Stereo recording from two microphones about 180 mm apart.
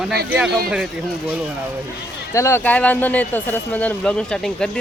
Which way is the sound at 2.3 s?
15° left (ahead or behind).